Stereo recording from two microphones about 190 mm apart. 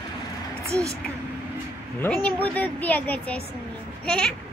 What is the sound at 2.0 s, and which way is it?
A woman's voice, 10° left (ahead or behind).